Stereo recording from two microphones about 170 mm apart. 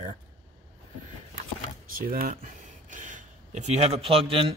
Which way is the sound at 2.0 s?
60° right (ahead or behind).